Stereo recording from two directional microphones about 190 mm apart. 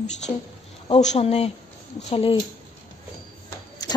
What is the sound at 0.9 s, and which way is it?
A woman's voice, 35° left (ahead or behind).